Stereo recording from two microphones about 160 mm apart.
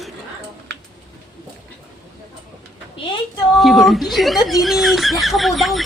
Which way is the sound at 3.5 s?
Centre (ahead or behind).